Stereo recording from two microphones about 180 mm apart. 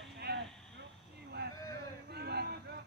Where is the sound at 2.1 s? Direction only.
65° right (ahead or behind).